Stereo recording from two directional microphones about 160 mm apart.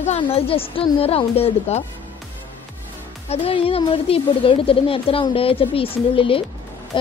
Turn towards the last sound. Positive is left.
turn(degrees=35)  # may be behind; listen again after turning